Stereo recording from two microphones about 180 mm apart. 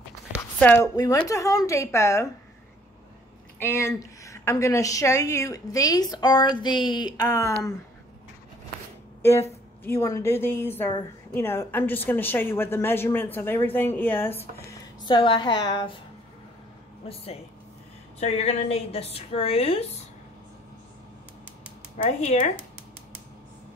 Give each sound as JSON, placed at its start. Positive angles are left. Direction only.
{"t": 0.6, "sound": "speech", "side_deg": 10}
{"t": 0.9, "sound": "speech", "side_deg": 20}
{"t": 3.5, "sound": "a woman's voice", "side_deg": 15}
{"t": 9.8, "sound": "speech", "side_deg": 15}
{"t": 15.0, "sound": "a woman's voice", "side_deg": 25}
{"t": 17.1, "sound": "a woman's voice", "side_deg": 35}
{"t": 21.9, "sound": "a woman's voice", "side_deg": 40}